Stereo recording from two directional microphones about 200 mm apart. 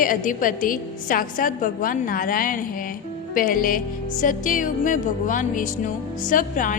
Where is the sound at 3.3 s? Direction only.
45° left (ahead or behind).